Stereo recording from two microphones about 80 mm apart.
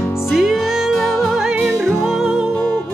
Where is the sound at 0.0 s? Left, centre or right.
Left.